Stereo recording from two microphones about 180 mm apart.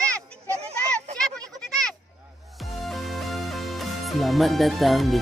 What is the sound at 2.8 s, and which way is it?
Music, centre (ahead or behind).